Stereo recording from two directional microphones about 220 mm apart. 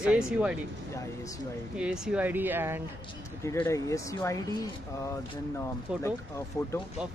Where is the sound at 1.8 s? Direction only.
5° right (ahead or behind).